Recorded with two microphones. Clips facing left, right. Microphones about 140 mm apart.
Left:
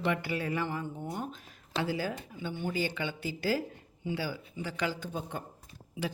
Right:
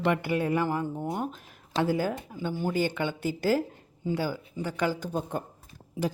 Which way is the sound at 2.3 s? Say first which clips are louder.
Right 6 dB; 35° right (ahead or behind).